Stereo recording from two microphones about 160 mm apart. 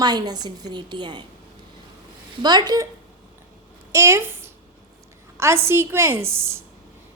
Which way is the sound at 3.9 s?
15° right (ahead or behind).